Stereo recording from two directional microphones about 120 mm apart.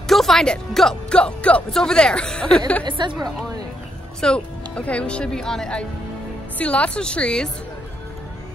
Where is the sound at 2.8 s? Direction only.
40° right (ahead or behind).